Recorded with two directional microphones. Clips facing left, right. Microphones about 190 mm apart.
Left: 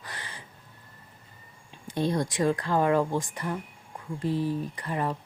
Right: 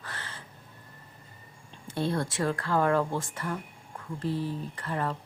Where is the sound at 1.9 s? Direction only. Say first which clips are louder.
Left 2 dB; 15° left (ahead or behind).